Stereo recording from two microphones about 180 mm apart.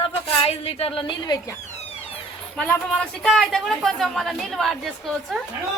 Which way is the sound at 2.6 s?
5° left (ahead or behind).